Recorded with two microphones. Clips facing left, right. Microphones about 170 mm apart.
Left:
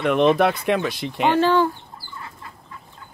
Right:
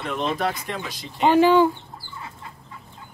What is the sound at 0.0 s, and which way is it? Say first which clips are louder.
Speech: left 8 dB; 65° left (ahead or behind).